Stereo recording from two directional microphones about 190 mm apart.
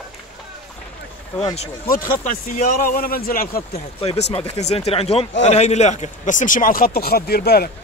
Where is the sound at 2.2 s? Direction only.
40° left (ahead or behind).